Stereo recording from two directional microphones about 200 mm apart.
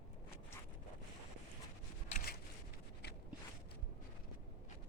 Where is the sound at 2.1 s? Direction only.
40° left (ahead or behind).